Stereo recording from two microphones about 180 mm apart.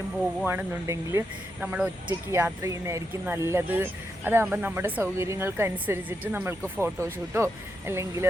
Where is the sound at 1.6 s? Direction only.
5° right (ahead or behind).